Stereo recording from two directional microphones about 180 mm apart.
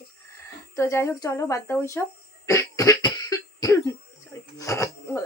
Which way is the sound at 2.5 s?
15° left (ahead or behind).